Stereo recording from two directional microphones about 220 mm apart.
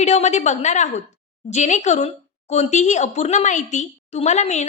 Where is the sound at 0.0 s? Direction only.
30° left (ahead or behind).